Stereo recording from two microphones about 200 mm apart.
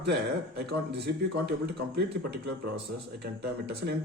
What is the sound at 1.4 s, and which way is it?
A man's voice, 55° right (ahead or behind).